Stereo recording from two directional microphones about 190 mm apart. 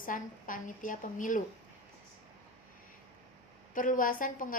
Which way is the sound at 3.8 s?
45° left (ahead or behind).